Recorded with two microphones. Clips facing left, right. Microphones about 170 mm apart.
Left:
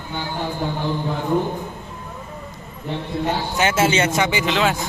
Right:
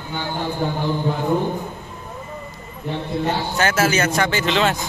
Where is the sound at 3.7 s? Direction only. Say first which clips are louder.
Left 2 dB; 25° left (ahead or behind); by 4.7 s 10° left (ahead or behind).